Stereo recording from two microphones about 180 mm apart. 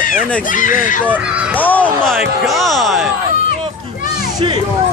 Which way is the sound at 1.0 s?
5° right (ahead or behind).